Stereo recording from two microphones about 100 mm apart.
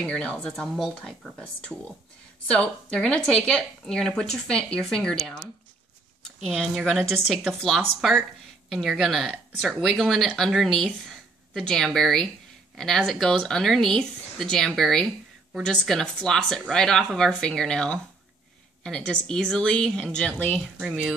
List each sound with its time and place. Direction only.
0.0 s speech: 10° left (ahead or behind)
6.4 s speech: centre (ahead or behind)